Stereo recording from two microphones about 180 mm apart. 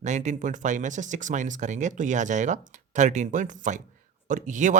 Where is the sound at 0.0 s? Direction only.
40° right (ahead or behind).